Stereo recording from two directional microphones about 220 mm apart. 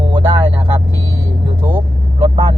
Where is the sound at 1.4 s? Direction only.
20° right (ahead or behind).